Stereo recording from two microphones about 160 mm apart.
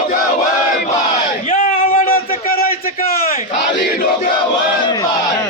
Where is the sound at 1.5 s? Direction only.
60° left (ahead or behind).